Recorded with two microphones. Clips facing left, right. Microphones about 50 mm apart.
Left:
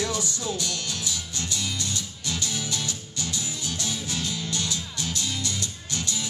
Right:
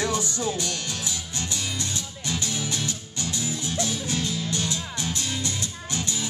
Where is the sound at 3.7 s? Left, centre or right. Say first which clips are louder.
Right 4 dB; right.